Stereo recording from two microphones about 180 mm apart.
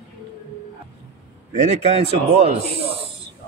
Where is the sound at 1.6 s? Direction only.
35° right (ahead or behind).